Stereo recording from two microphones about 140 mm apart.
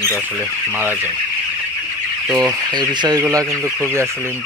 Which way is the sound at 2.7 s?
30° right (ahead or behind).